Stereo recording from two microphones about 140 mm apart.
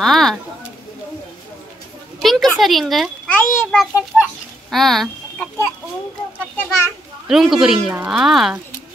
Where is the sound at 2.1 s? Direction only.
Centre (ahead or behind).